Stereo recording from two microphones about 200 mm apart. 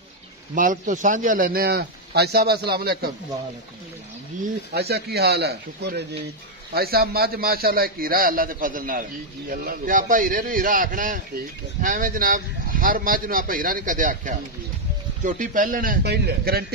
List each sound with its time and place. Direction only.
0.6 s a man's voice: 40° right (ahead or behind)
4.7 s a man's voice: 55° right (ahead or behind)